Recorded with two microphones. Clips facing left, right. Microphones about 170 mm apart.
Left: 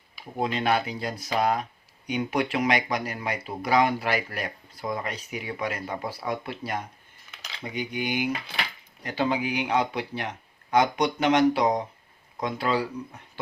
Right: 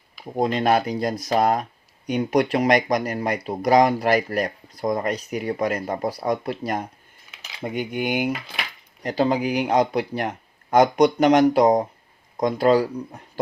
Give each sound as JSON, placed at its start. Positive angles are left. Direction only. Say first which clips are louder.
{"t": 0.3, "sound": "speech", "louder": "right 5 dB", "side_deg": -40}
{"t": 9.0, "sound": "speech", "louder": "right 5 dB", "side_deg": -40}